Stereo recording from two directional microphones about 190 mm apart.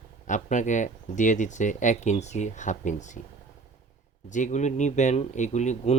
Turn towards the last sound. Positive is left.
turn(degrees=40)  # may be behind; listen again after turning